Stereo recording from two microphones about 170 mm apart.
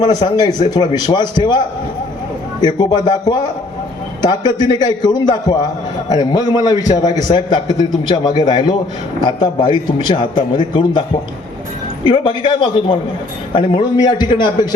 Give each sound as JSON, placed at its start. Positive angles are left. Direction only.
{"t": 0.0, "sound": "a man's voice", "side_deg": 25}
{"t": 12.0, "sound": "a man's voice", "side_deg": 30}